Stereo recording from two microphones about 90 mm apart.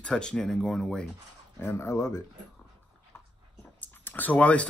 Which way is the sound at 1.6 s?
25° left (ahead or behind).